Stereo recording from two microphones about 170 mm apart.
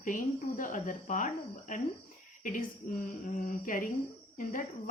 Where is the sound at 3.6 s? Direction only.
50° left (ahead or behind).